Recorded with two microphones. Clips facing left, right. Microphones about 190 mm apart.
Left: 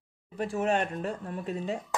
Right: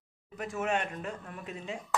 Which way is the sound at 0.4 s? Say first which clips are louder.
Left 4 dB; 35° left (ahead or behind).